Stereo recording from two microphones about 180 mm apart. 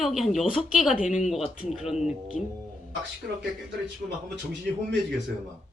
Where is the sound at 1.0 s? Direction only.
40° left (ahead or behind).